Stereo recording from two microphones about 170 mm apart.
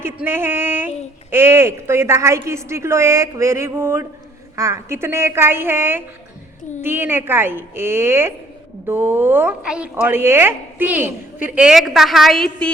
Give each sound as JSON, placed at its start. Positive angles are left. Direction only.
{"t": 0.0, "sound": "a woman's voice", "side_deg": -15}